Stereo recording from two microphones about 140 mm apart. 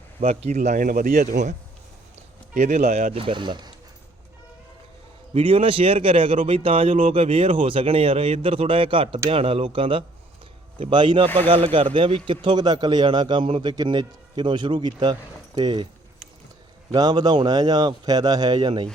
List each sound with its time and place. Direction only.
0.3 s speech: 50° right (ahead or behind); by 1.2 s 90° right
1.2 s a man's voice: 60° right (ahead or behind)
2.6 s speech: 50° right (ahead or behind)
3.1 s speech: 40° right (ahead or behind)
5.3 s speech: 40° right (ahead or behind)
16.9 s a man's voice: 30° right (ahead or behind)